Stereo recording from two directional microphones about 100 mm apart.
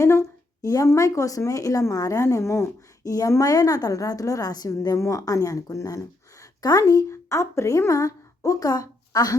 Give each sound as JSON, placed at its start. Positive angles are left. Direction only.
{"t": 0.0, "sound": "speech", "side_deg": 30}